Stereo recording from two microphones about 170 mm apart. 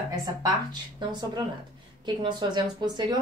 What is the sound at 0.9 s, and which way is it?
A woman's voice, 25° right (ahead or behind).